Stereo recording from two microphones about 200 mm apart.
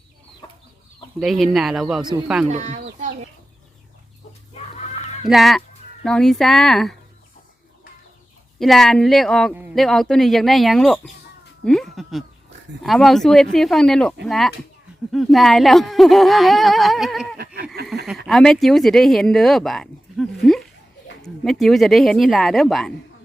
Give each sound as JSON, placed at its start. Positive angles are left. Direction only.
{"t": 1.2, "sound": "speech", "side_deg": 0}
{"t": 2.5, "sound": "speech", "side_deg": -35}
{"t": 5.3, "sound": "speech", "side_deg": 0}
{"t": 8.5, "sound": "speech", "side_deg": 0}
{"t": 17.3, "sound": "a sound", "side_deg": -50}
{"t": 18.3, "sound": "speech", "side_deg": 0}